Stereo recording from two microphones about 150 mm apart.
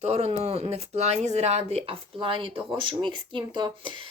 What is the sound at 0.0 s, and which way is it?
Speech, 45° right (ahead or behind).